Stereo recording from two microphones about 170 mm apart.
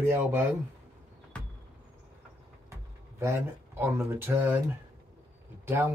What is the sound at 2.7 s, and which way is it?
Speech, 15° right (ahead or behind).